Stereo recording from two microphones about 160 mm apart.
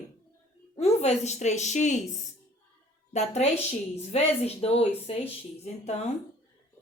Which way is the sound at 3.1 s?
45° left (ahead or behind).